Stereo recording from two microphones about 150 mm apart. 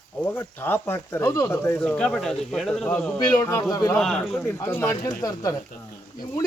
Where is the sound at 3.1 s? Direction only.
25° left (ahead or behind).